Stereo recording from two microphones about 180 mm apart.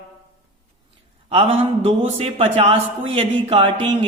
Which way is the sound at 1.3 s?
30° right (ahead or behind).